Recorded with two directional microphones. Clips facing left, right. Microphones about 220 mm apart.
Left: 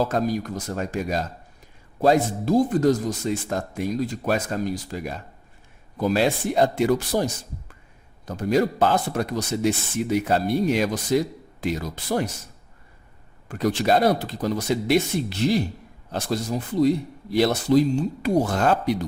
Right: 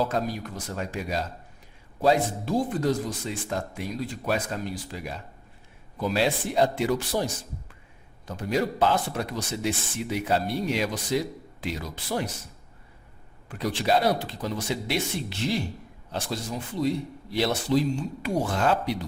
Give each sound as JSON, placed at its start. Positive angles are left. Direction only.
{"t": 0.1, "sound": "speech", "side_deg": 45}
{"t": 8.3, "sound": "speech", "side_deg": 40}
{"t": 13.5, "sound": "speech", "side_deg": 45}